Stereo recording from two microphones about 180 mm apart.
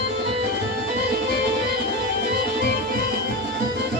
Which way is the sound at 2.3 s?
55° right (ahead or behind).